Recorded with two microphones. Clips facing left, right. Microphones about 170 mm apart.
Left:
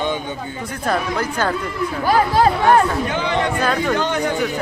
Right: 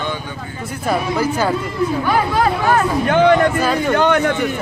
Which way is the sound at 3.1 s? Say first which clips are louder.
Right 10 dB; 55° right (ahead or behind).